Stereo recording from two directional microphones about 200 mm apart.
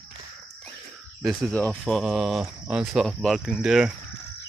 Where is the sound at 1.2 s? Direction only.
5° left (ahead or behind).